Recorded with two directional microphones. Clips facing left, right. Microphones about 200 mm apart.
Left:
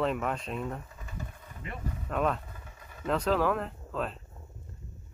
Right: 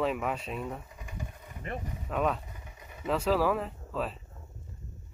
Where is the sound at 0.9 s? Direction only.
15° right (ahead or behind).